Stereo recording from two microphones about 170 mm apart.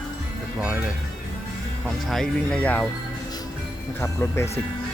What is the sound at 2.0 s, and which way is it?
Speech, 5° left (ahead or behind).